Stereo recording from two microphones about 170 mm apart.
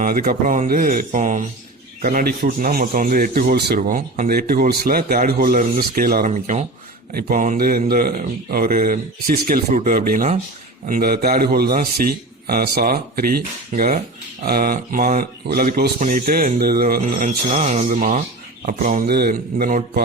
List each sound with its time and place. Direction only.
0.0 s speech: 55° right (ahead or behind)
7.1 s speech: 60° right (ahead or behind)
16.0 s speech: 50° right (ahead or behind)